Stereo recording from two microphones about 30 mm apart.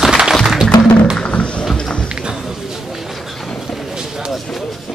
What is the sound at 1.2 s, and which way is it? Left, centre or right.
Roaring cats, left.